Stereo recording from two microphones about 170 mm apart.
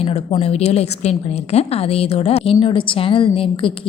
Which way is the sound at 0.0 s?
35° left (ahead or behind).